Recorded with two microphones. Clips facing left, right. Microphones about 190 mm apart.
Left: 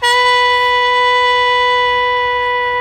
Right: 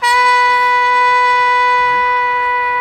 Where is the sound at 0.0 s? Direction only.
30° left (ahead or behind).